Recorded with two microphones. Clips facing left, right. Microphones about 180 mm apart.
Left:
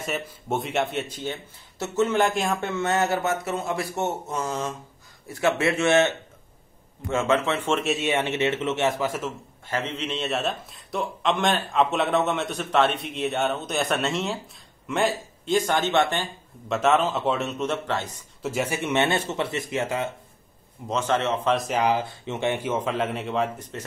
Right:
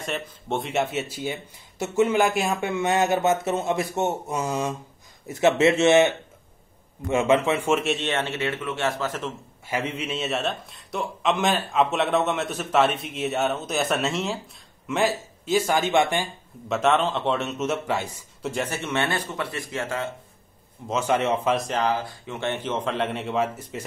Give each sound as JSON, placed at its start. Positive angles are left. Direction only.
{"t": 0.0, "sound": "speech", "side_deg": 5}
{"t": 7.8, "sound": "a man's voice", "side_deg": 0}
{"t": 8.1, "sound": "speech", "side_deg": 15}
{"t": 9.7, "sound": "a man's voice", "side_deg": -10}
{"t": 16.6, "sound": "a man's voice", "side_deg": 0}
{"t": 18.4, "sound": "speech", "side_deg": 5}
{"t": 20.9, "sound": "speech", "side_deg": -10}
{"t": 21.5, "sound": "a man's voice", "side_deg": 5}
{"t": 21.8, "sound": "a man's voice", "side_deg": 20}